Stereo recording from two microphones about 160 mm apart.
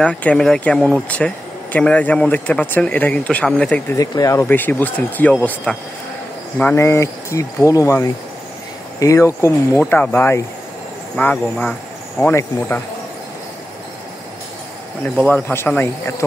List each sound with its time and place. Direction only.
0.0 s speech: 5° left (ahead or behind)
3.9 s speech: 20° left (ahead or behind)
15.1 s speech: 10° left (ahead or behind)